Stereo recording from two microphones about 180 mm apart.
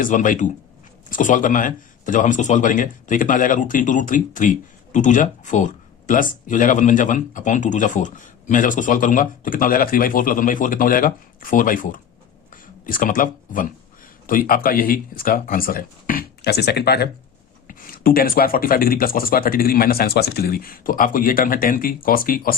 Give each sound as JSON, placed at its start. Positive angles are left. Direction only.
{"t": 0.0, "sound": "speech", "side_deg": 45}
{"t": 17.7, "sound": "speech", "side_deg": 50}